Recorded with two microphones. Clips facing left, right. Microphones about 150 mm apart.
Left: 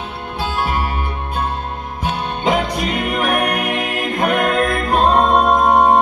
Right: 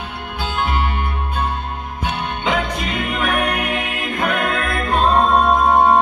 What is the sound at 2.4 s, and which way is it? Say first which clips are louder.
Music: left 4 dB; 40° left (ahead or behind).